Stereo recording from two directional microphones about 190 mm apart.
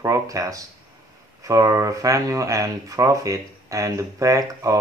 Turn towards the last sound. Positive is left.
turn(degrees=-15)  # may be behind; listen again after turning